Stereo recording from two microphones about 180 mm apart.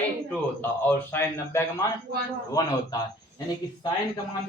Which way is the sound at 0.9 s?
10° left (ahead or behind).